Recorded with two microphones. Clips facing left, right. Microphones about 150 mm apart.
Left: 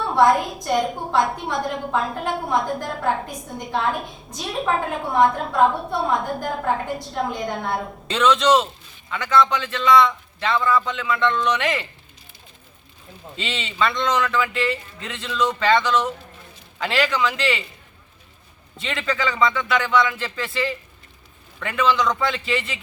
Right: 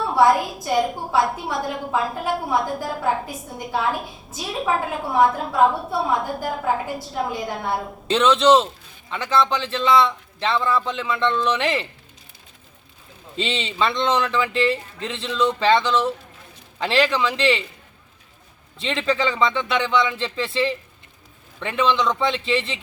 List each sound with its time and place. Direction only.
0.0 s a woman's voice: centre (ahead or behind)
8.1 s a man's voice: 30° right (ahead or behind)
13.4 s a man's voice: 30° right (ahead or behind)
18.8 s a man's voice: 25° right (ahead or behind)